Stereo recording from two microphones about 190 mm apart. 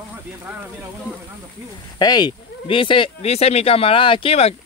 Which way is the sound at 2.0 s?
20° left (ahead or behind).